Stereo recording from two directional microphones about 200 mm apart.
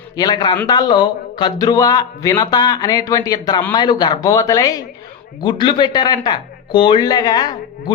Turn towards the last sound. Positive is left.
turn(degrees=20)  # may be behind; listen again after turning